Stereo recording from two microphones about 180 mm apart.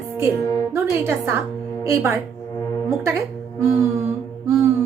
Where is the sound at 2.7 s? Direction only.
20° left (ahead or behind).